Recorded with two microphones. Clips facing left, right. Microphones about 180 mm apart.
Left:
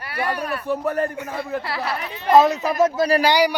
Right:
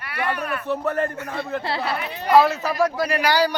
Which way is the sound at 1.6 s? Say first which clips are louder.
Right 1 dB; 25° right (ahead or behind).